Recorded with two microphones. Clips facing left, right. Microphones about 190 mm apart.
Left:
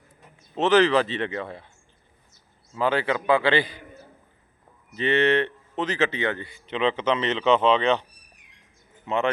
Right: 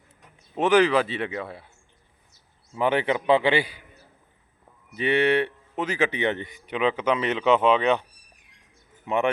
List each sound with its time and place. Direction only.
0.5 s a man's voice: 10° right (ahead or behind)
2.7 s a man's voice: 20° right (ahead or behind)
4.9 s a man's voice: 10° right (ahead or behind)
9.0 s a man's voice: 15° right (ahead or behind)